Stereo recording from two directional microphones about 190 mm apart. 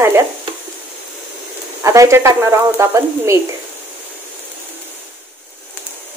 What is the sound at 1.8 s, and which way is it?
Speech, 15° right (ahead or behind).